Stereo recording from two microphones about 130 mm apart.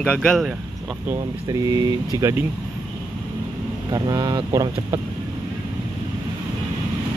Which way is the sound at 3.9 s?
30° right (ahead or behind).